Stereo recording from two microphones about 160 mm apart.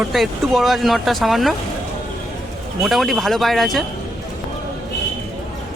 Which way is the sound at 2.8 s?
Centre (ahead or behind).